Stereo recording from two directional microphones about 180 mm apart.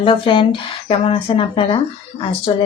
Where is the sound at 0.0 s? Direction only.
30° left (ahead or behind).